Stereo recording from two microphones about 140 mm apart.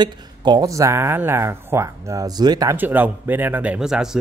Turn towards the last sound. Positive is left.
turn(degrees=-5)  # may be behind; listen again after turning